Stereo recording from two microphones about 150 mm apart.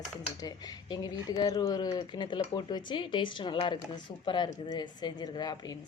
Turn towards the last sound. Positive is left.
turn(degrees=25)  # may be behind; listen again after turning